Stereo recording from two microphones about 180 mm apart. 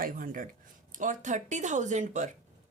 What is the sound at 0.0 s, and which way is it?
Speech, 50° right (ahead or behind).